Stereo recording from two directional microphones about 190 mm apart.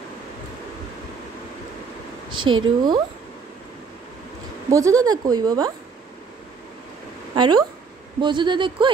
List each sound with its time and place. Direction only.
2.6 s a woman's voice: 20° right (ahead or behind)
4.6 s a woman's voice: 15° right (ahead or behind)
7.3 s a woman's voice: 25° right (ahead or behind)